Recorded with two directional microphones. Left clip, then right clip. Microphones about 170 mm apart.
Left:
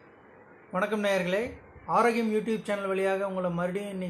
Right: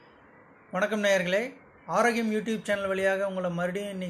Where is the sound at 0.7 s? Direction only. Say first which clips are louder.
Right 2 dB; 5° right (ahead or behind).